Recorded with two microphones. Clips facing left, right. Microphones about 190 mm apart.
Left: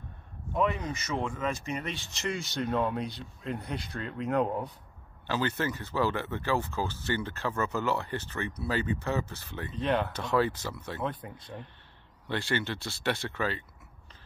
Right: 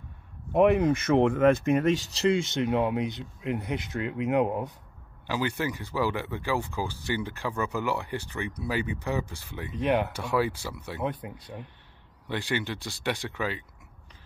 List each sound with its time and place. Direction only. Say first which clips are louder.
0.5 s speech: right 9 dB; 65° right (ahead or behind); by 13.7 s 15° right (ahead or behind)